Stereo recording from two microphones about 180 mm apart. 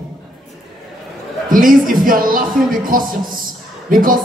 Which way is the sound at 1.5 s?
50° right (ahead or behind).